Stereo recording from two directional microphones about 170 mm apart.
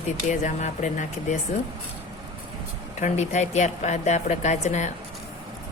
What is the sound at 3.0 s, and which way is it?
Speech, 45° left (ahead or behind).